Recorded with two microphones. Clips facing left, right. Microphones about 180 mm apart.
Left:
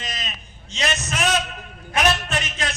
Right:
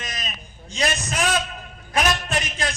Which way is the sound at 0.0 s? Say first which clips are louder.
Left 1 dB; 45° right (ahead or behind).